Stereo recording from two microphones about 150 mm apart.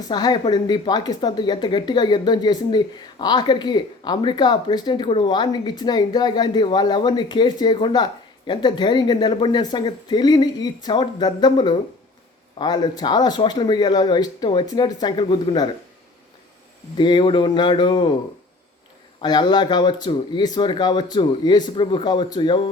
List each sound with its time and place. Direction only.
0.0 s a woman's voice: 25° left (ahead or behind)
17.0 s speech: 35° left (ahead or behind)
19.2 s a woman's voice: 30° left (ahead or behind)